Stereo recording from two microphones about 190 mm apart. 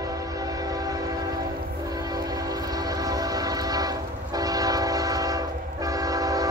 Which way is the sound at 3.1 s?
20° right (ahead or behind).